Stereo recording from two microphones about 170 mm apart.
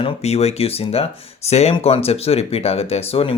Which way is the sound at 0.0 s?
40° left (ahead or behind).